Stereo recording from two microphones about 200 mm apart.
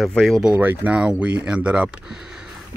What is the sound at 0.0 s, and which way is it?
Speech, centre (ahead or behind).